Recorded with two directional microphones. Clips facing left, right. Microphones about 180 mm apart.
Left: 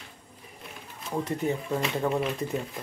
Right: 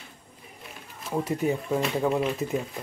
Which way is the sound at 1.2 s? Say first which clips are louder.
Right 2 dB; 10° right (ahead or behind).